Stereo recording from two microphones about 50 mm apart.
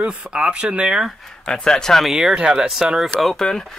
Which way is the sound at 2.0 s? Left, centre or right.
Centre.